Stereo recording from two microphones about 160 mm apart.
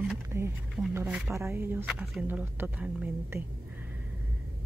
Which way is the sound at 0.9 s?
10° right (ahead or behind).